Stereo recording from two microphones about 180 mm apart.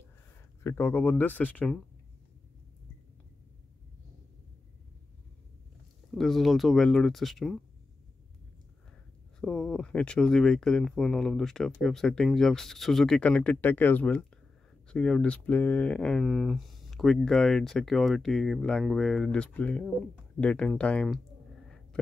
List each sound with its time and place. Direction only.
0.7 s speech: 10° left (ahead or behind)
6.1 s speech: centre (ahead or behind)
9.4 s speech: 5° left (ahead or behind)